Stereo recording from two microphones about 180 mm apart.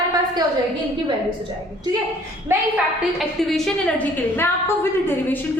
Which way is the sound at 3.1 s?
Centre (ahead or behind).